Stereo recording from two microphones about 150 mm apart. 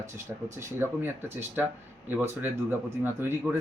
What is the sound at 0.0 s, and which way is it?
Speech, 20° right (ahead or behind).